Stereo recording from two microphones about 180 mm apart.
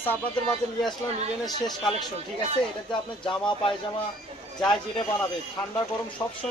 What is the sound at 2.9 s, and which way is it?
Speech, 25° left (ahead or behind).